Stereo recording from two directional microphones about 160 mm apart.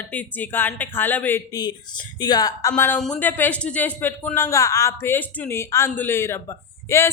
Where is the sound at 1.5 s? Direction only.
25° left (ahead or behind).